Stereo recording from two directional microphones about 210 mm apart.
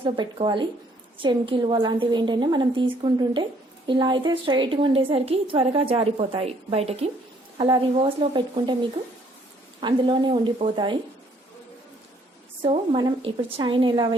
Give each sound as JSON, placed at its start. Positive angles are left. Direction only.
{"t": 0.0, "sound": "a woman's voice", "side_deg": -25}
{"t": 12.6, "sound": "a woman's voice", "side_deg": -25}